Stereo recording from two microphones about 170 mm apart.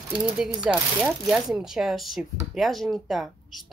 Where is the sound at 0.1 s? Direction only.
10° right (ahead or behind).